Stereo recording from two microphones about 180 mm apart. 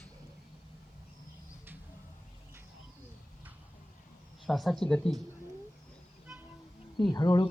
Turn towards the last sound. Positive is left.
turn(degrees=20)  # may be behind; listen again after turning